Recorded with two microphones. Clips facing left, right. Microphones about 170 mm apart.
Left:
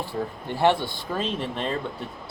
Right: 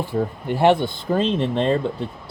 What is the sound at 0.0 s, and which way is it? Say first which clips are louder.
Speech: right 6 dB; 15° right (ahead or behind).